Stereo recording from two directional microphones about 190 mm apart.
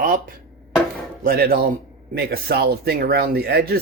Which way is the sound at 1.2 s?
50° right (ahead or behind).